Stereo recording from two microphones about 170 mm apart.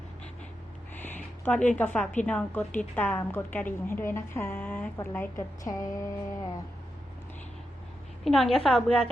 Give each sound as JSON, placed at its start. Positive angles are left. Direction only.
{"t": 1.5, "sound": "a woman's voice", "side_deg": 5}
{"t": 8.2, "sound": "a woman's voice", "side_deg": 0}